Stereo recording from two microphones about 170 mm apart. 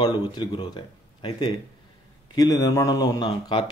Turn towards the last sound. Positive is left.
turn(degrees=25)  # may be behind; listen again after turning